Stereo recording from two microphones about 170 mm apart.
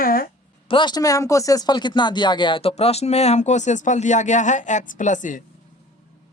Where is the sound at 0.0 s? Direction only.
55° left (ahead or behind).